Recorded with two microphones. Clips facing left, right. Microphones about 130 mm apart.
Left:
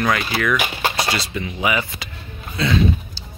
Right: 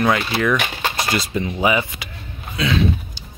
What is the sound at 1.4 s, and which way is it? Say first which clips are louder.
Speech: right 6 dB; 30° right (ahead or behind).